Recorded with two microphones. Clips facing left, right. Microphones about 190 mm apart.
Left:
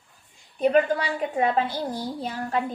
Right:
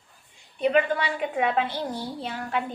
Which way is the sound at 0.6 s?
40° left (ahead or behind).